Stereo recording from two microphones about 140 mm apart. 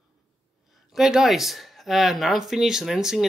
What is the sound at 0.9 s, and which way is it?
Speech, centre (ahead or behind).